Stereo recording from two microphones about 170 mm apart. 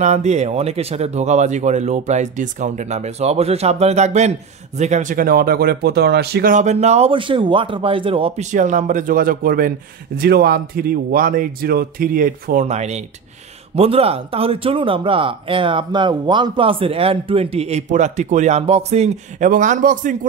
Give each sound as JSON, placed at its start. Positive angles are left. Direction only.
{"t": 0.0, "sound": "speech", "side_deg": -45}
{"t": 6.5, "sound": "speech", "side_deg": -45}
{"t": 8.5, "sound": "a man's voice", "side_deg": -45}
{"t": 12.6, "sound": "speech", "side_deg": -40}